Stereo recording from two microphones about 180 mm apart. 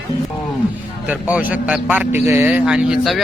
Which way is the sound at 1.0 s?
10° right (ahead or behind).